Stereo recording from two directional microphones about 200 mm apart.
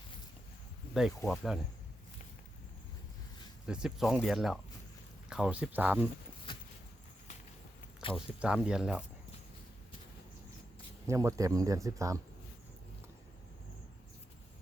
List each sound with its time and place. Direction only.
1.2 s speech: centre (ahead or behind)
3.7 s speech: 5° right (ahead or behind)
8.1 s speech: 5° right (ahead or behind)
11.0 s speech: 15° right (ahead or behind)